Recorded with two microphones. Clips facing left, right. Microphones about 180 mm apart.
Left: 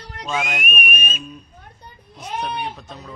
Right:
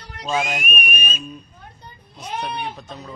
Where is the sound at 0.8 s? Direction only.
5° left (ahead or behind).